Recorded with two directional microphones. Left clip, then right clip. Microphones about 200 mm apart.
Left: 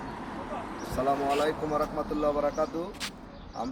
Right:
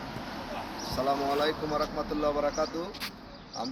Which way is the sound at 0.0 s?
40° right (ahead or behind).